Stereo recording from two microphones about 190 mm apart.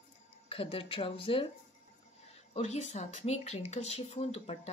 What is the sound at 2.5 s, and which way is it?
Speech, 35° left (ahead or behind).